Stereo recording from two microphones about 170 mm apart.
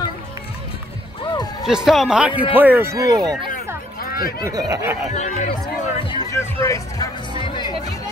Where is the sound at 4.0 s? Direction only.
60° left (ahead or behind).